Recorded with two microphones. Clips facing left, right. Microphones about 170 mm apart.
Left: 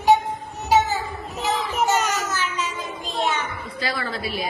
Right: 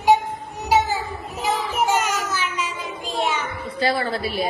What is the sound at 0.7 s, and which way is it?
Children playing, 10° right (ahead or behind).